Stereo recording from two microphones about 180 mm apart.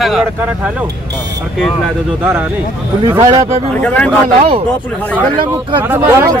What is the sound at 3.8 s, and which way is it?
Speech, 5° left (ahead or behind).